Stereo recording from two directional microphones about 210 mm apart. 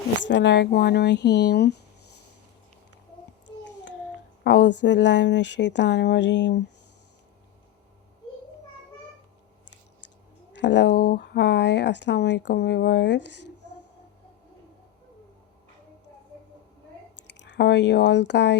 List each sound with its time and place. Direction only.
0.2 s speech: 60° left (ahead or behind)
3.4 s child singing: 55° left (ahead or behind)
4.4 s speech: 55° left (ahead or behind)
10.5 s speech: 55° left (ahead or behind)
17.2 s speech: 55° left (ahead or behind)